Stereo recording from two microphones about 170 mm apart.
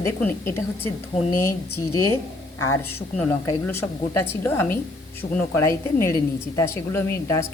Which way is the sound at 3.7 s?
15° left (ahead or behind).